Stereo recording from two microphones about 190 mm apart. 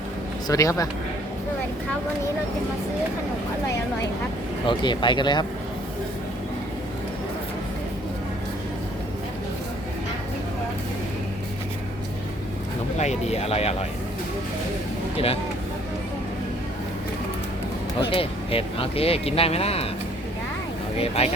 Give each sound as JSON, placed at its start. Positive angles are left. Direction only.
{"t": 0.4, "sound": "speech", "side_deg": 15}
{"t": 4.6, "sound": "speech", "side_deg": 25}
{"t": 13.0, "sound": "speech", "side_deg": 35}
{"t": 18.1, "sound": "speech", "side_deg": 30}
{"t": 21.2, "sound": "speech", "side_deg": 35}